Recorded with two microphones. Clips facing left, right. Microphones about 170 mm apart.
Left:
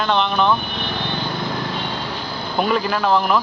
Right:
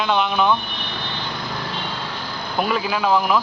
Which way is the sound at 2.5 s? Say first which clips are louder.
Left 2 dB; centre (ahead or behind).